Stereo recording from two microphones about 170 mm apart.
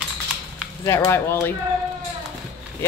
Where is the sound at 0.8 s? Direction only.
15° left (ahead or behind).